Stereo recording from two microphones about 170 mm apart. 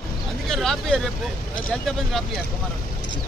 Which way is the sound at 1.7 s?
Centre (ahead or behind).